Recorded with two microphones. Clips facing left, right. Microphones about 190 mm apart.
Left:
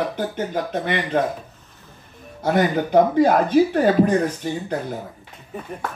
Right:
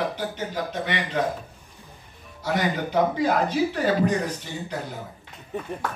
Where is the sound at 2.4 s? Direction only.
55° left (ahead or behind).